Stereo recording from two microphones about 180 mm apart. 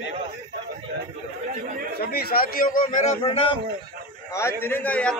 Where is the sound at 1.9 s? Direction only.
60° left (ahead or behind).